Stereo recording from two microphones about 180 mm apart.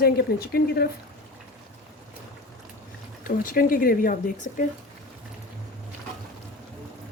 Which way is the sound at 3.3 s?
50° left (ahead or behind).